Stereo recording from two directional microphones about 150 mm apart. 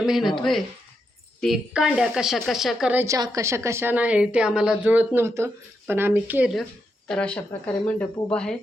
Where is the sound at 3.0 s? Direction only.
20° right (ahead or behind).